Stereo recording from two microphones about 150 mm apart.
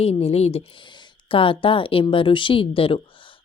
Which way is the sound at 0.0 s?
40° left (ahead or behind).